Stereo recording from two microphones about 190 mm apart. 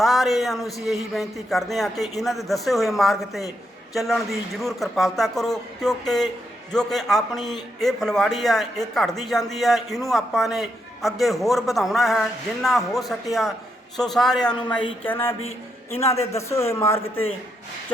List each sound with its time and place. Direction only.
0.0 s speech: centre (ahead or behind)
14.5 s a woman's voice: 25° left (ahead or behind)
15.0 s speech: 10° left (ahead or behind)
15.4 s a man's voice: 90° left
16.3 s speech: 15° left (ahead or behind)